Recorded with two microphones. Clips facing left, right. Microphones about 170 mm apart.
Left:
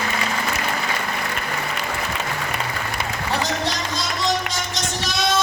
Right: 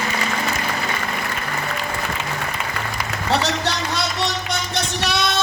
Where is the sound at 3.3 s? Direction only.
70° right (ahead or behind).